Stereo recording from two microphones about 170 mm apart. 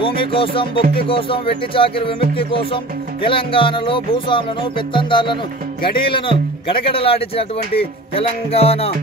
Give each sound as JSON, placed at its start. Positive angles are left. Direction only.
{"t": 0.0, "sound": "music", "side_deg": 30}